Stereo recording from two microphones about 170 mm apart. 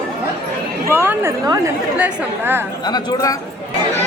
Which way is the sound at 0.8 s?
15° right (ahead or behind).